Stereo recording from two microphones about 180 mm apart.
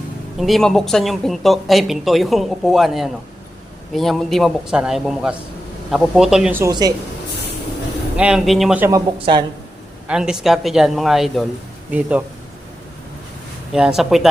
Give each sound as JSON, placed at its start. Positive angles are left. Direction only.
{"t": 0.3, "sound": "speech", "side_deg": 0}
{"t": 6.6, "sound": "speech", "side_deg": -20}
{"t": 8.1, "sound": "speech", "side_deg": -5}
{"t": 8.9, "sound": "speech", "side_deg": -25}
{"t": 10.1, "sound": "speech", "side_deg": -5}
{"t": 13.7, "sound": "speech", "side_deg": -5}